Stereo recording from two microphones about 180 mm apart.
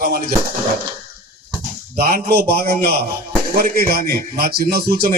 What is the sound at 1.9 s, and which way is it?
Speech, 55° right (ahead or behind).